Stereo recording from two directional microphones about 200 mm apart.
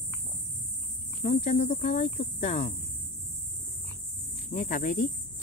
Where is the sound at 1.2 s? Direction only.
35° left (ahead or behind).